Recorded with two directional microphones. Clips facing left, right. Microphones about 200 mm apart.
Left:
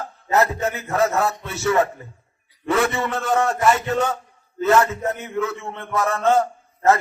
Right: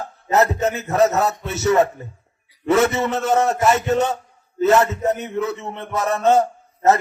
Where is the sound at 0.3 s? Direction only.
20° right (ahead or behind).